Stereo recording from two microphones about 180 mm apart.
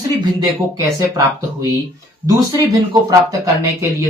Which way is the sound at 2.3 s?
20° right (ahead or behind).